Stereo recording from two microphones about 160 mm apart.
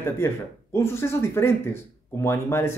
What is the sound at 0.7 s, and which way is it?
Speech, 15° left (ahead or behind).